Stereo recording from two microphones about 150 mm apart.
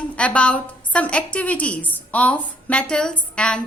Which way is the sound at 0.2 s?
10° left (ahead or behind).